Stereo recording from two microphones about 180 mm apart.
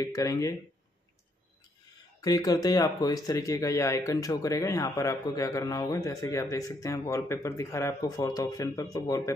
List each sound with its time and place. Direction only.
0.0 s speech: 20° left (ahead or behind)
2.2 s speech: 20° left (ahead or behind)